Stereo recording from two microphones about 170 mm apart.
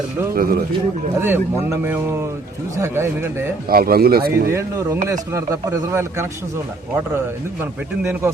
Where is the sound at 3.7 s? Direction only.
60° right (ahead or behind).